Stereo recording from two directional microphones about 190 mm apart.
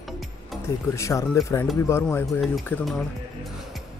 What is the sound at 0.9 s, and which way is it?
Speech, 15° left (ahead or behind).